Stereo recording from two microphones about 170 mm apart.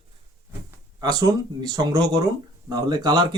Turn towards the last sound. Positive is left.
turn(degrees=-25)  # may be behind; listen again after turning